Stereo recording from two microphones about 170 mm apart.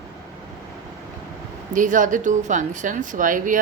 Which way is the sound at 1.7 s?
50° right (ahead or behind).